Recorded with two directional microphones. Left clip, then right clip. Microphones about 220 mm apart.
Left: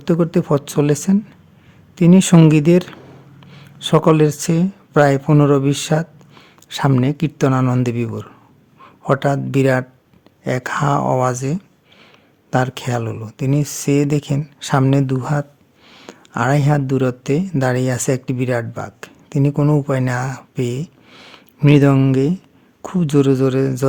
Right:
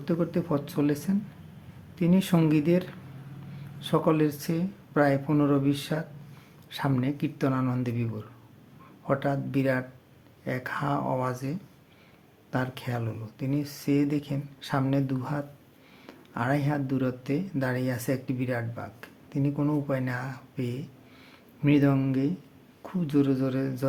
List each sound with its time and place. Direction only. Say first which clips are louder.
0.0 s speech: left 11 dB; 50° left (ahead or behind)